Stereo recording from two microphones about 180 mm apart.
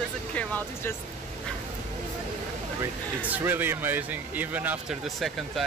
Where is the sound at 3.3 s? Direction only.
10° right (ahead or behind).